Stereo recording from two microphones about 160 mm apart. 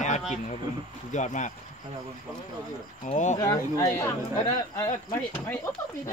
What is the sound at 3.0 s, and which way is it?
Speech, 50° left (ahead or behind).